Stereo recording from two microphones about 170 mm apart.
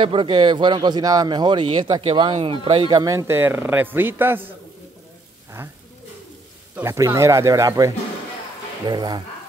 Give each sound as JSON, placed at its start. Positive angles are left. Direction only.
{"t": 0.0, "sound": "speech", "side_deg": -30}
{"t": 6.8, "sound": "speech", "side_deg": -15}